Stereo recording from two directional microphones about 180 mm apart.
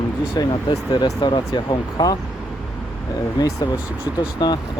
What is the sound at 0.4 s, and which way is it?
Speech, 20° left (ahead or behind).